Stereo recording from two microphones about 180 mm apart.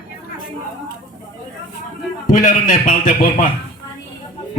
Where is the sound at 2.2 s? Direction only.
50° left (ahead or behind).